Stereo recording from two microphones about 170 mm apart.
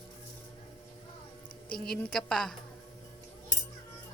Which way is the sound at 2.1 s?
Centre (ahead or behind).